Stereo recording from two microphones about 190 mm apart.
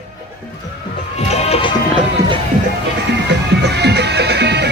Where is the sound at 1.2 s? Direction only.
35° left (ahead or behind).